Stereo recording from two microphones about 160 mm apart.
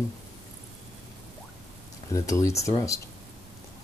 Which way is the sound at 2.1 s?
20° left (ahead or behind).